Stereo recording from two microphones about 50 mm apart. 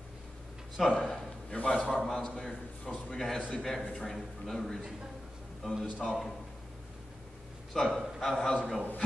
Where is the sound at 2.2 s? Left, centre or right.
Centre.